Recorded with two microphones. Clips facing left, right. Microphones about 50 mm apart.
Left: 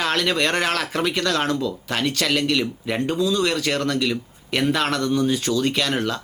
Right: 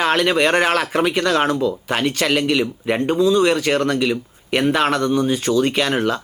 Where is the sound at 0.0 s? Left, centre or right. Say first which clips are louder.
Right 5 dB; centre.